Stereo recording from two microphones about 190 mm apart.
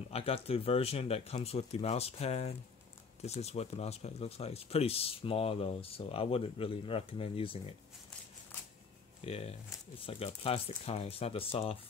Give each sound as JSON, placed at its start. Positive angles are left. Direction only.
{"t": 0.1, "sound": "speech", "side_deg": 30}
{"t": 9.2, "sound": "speech", "side_deg": 30}